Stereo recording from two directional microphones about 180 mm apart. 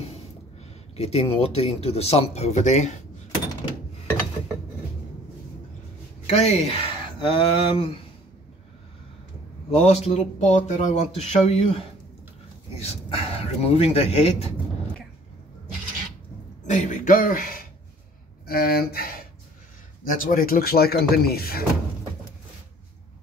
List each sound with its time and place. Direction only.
0.9 s speech: 35° left (ahead or behind)
6.2 s speech: 35° left (ahead or behind)
9.8 s speech: 35° left (ahead or behind)
16.6 s speech: 40° left (ahead or behind)
20.1 s speech: 50° left (ahead or behind)